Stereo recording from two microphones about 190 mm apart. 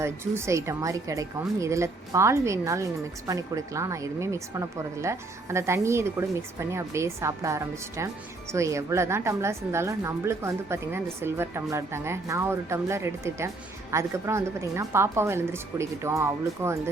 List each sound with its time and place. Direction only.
0.0 s a woman's voice: 15° right (ahead or behind)